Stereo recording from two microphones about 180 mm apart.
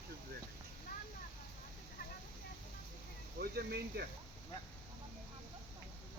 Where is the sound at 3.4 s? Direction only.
60° right (ahead or behind).